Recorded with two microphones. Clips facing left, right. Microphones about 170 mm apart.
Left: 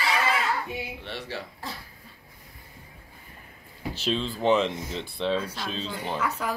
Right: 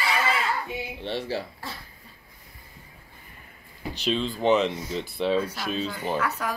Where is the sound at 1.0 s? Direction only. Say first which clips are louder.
Right 6 dB; 30° right (ahead or behind).